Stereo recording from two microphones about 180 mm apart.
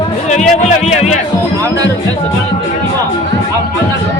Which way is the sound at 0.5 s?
40° left (ahead or behind).